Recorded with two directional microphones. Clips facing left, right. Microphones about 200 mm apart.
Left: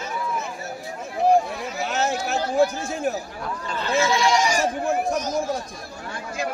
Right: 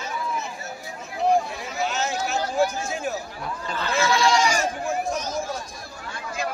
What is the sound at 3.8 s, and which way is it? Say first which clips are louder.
Speech: left 1 dB; 20° left (ahead or behind).